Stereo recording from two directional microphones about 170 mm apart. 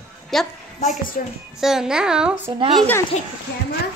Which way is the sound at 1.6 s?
5° right (ahead or behind).